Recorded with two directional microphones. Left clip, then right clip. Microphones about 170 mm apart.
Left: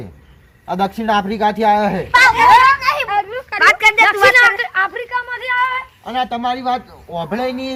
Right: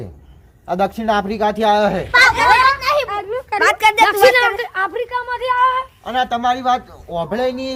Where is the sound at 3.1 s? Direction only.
90° right; by 5.7 s 55° right (ahead or behind).